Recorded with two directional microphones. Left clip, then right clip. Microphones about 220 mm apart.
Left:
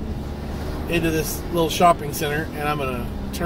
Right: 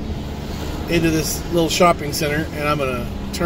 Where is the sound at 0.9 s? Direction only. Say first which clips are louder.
Right 3 dB; 25° right (ahead or behind).